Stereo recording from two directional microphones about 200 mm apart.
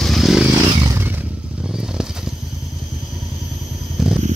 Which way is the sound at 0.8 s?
15° right (ahead or behind).